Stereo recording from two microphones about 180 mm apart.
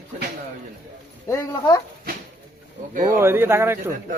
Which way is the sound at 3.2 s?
15° right (ahead or behind).